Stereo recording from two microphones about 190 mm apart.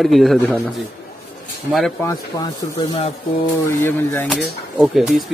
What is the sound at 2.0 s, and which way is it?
Speech, 20° left (ahead or behind).